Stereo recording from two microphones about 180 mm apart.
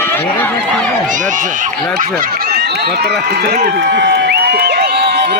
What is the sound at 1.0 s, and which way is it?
Speech, 45° right (ahead or behind).